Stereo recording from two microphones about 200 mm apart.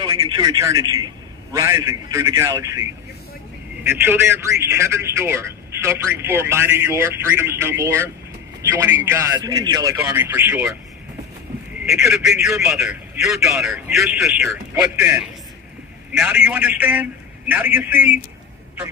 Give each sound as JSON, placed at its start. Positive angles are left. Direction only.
{"t": 0.0, "sound": "a man's voice", "side_deg": -20}
{"t": 11.8, "sound": "a man's voice", "side_deg": -5}
{"t": 15.0, "sound": "a man's voice", "side_deg": -15}